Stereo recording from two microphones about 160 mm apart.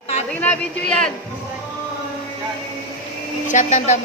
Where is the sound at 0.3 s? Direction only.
10° left (ahead or behind).